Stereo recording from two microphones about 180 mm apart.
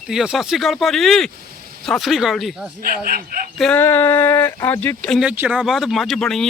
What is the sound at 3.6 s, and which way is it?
Speech, 10° left (ahead or behind).